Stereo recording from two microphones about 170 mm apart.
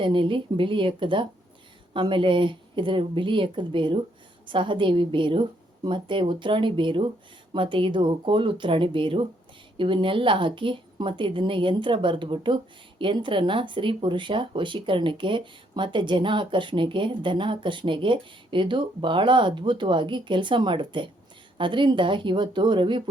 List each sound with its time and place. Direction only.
0.0 s speech: 30° right (ahead or behind)